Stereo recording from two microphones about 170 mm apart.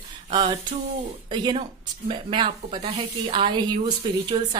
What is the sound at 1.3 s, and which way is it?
A woman's voice, 30° right (ahead or behind).